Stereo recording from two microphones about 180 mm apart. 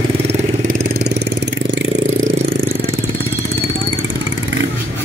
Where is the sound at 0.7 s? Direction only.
65° right (ahead or behind).